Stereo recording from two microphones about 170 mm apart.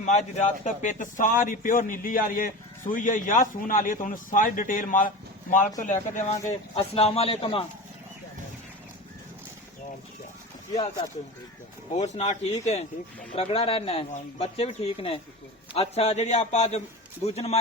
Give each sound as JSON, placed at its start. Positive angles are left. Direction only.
{"t": 0.0, "sound": "a man's voice", "side_deg": 45}
{"t": 6.5, "sound": "speech", "side_deg": 35}
{"t": 11.9, "sound": "a man's voice", "side_deg": 40}